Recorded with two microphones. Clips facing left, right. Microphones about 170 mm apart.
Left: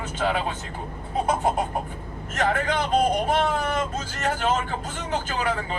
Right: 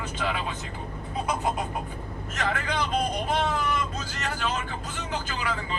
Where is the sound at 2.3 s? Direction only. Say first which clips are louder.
Left 5 dB; 50° left (ahead or behind).